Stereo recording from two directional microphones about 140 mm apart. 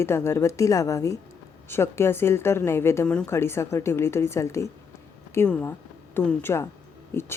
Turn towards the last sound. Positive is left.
turn(degrees=20)  # may be behind; listen again after turning